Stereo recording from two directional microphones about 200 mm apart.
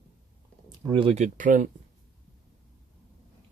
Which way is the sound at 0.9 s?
30° right (ahead or behind).